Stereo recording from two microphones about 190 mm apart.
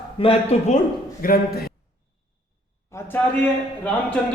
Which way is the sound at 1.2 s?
50° left (ahead or behind).